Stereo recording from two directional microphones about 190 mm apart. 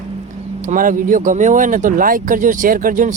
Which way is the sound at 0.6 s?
45° right (ahead or behind).